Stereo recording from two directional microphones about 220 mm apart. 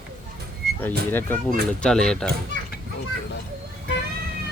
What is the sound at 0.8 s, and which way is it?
Speech, 10° left (ahead or behind).